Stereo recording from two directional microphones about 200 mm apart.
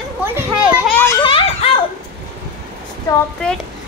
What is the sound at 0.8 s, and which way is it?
Children playing, 10° left (ahead or behind).